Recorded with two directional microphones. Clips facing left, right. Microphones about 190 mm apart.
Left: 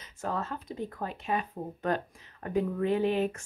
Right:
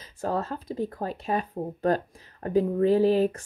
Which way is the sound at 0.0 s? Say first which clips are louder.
Right 5 dB; 35° right (ahead or behind).